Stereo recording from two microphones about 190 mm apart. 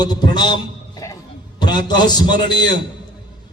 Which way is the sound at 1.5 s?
25° left (ahead or behind).